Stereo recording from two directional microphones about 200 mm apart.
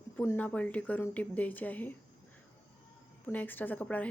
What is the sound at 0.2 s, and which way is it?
Speech, 5° left (ahead or behind).